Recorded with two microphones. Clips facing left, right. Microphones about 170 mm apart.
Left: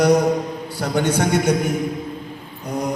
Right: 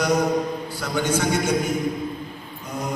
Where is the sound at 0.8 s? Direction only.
60° left (ahead or behind).